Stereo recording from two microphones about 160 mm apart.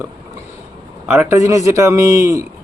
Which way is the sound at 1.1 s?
15° right (ahead or behind).